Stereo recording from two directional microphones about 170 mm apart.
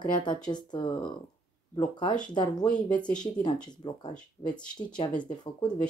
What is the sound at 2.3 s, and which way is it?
Speech, 25° left (ahead or behind).